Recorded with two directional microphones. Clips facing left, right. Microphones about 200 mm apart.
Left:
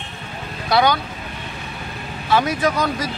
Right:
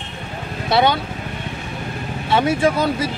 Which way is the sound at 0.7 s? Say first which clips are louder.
Right 1 dB; 25° right (ahead or behind).